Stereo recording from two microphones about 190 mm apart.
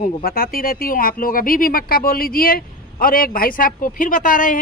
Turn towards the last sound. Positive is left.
turn(degrees=45)  # may be behind; listen again after turning